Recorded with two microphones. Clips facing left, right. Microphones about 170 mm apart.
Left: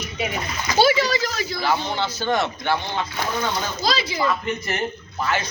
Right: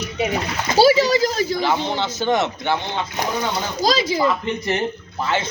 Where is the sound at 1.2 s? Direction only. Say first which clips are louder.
Right 7 dB; 35° right (ahead or behind).